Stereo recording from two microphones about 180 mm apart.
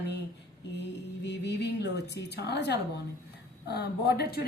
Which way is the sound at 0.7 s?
70° left (ahead or behind).